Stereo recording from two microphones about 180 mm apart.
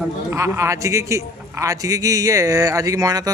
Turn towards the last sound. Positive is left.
turn(degrees=-20)  # may be behind; listen again after turning